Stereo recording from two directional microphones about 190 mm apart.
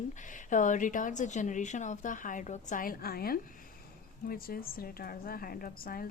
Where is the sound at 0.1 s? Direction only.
40° left (ahead or behind).